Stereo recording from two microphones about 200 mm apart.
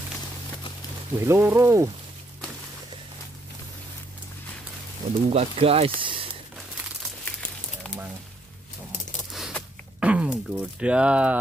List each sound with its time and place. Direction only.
1.1 s speech: 10° right (ahead or behind)
5.3 s speech: 30° right (ahead or behind)
9.3 s a sound: centre (ahead or behind)